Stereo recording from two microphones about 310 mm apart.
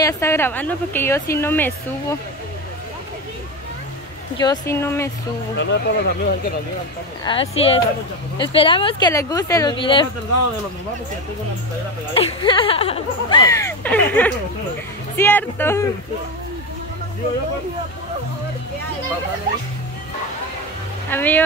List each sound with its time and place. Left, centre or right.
0.0 s speech: centre
4.4 s speech: centre
5.6 s speech: left
7.2 s speech: centre
12.1 s speech: centre
21.1 s speech: centre